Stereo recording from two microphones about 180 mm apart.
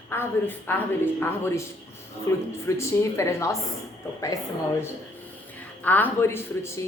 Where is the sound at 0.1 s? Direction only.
10° left (ahead or behind).